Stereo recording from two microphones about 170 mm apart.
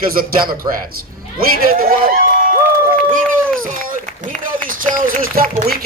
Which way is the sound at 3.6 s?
55° right (ahead or behind).